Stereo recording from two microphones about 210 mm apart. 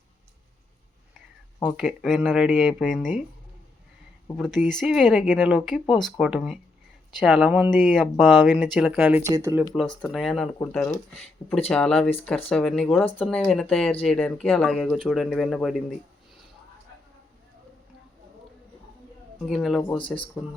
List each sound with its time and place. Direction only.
1.6 s speech: 5° right (ahead or behind)
4.4 s speech: centre (ahead or behind); by 9.6 s 15° right (ahead or behind)
10.0 s speech: centre (ahead or behind)
19.5 s speech: centre (ahead or behind)
20.0 s speech: 25° left (ahead or behind)